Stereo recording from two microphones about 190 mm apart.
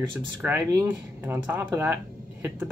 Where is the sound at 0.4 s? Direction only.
15° right (ahead or behind).